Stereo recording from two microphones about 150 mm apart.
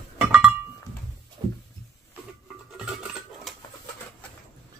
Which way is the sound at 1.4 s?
30° right (ahead or behind).